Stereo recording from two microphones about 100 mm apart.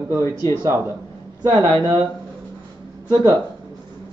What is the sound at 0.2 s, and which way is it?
Speech, 40° left (ahead or behind).